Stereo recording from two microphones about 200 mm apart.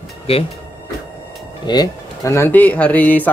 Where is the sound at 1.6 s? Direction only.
20° left (ahead or behind).